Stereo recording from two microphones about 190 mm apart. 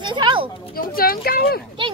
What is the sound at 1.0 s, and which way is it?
Speech, 50° left (ahead or behind).